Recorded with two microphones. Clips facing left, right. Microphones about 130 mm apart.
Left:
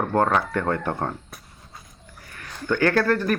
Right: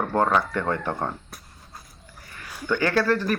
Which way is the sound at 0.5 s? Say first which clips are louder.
Left 2 dB; 50° left (ahead or behind).